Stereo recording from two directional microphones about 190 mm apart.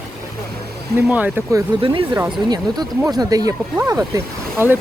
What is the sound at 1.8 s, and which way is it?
Speech, 25° right (ahead or behind).